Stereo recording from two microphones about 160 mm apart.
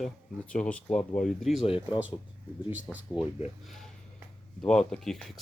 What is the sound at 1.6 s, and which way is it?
Speech, 35° left (ahead or behind).